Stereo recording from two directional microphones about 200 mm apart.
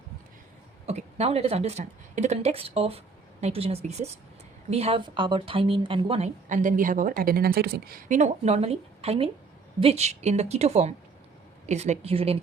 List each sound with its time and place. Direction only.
0.9 s speech: 30° right (ahead or behind)